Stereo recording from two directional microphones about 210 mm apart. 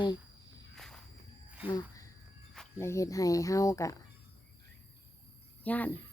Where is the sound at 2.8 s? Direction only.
15° left (ahead or behind).